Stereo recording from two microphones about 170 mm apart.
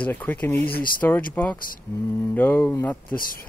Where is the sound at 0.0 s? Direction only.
10° left (ahead or behind).